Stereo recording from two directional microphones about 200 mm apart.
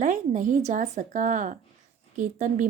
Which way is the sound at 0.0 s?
40° right (ahead or behind).